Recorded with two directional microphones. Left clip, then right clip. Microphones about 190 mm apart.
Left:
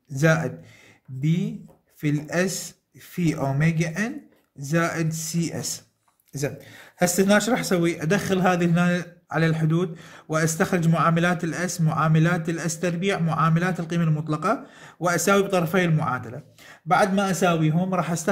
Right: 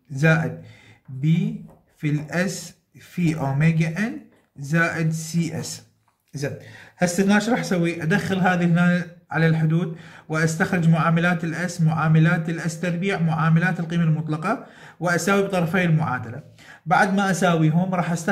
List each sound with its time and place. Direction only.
0.1 s speech: 45° left (ahead or behind)
6.3 s speech: 50° left (ahead or behind)